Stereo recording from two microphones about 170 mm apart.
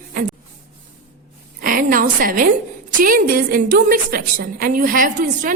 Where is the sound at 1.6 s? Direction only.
55° right (ahead or behind).